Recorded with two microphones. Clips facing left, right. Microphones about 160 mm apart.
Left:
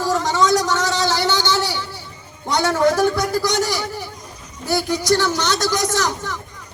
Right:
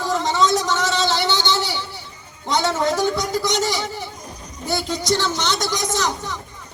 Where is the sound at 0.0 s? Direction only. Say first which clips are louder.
Left 1 dB; 20° right (ahead or behind).